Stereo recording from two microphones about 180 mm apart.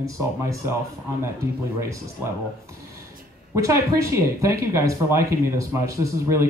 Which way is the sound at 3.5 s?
15° right (ahead or behind).